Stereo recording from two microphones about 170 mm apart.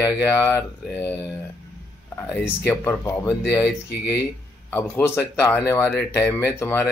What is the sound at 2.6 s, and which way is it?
Speech, 15° left (ahead or behind).